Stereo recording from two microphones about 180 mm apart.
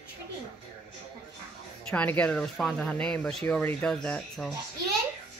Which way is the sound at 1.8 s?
10° left (ahead or behind).